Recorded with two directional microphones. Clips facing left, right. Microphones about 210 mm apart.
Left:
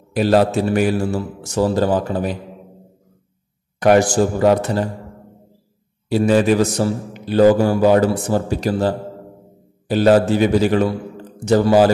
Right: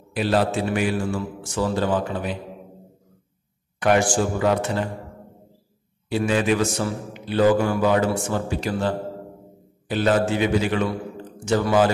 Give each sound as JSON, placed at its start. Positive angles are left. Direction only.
{"t": 0.1, "sound": "a man's voice", "side_deg": 40}
{"t": 3.8, "sound": "a man's voice", "side_deg": 40}
{"t": 6.0, "sound": "a man's voice", "side_deg": 40}